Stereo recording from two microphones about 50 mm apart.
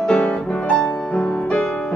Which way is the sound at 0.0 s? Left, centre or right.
Left.